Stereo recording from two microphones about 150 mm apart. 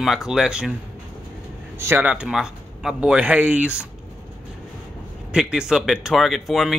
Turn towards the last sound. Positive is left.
turn(degrees=0)  # may be behind; listen again after turning